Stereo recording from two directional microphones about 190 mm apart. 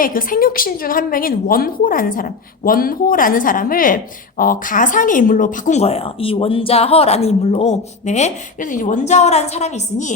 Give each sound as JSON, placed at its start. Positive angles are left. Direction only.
{"t": 0.0, "sound": "a woman's voice", "side_deg": 50}